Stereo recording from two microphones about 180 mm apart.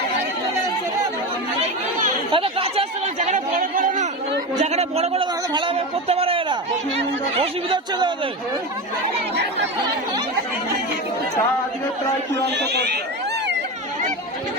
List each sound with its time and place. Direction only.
2.3 s chatter: 30° right (ahead or behind)
4.6 s speech: 35° right (ahead or behind)
12.5 s speech: 70° right (ahead or behind)